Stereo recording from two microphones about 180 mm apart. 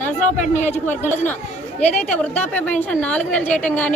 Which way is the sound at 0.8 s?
10° left (ahead or behind).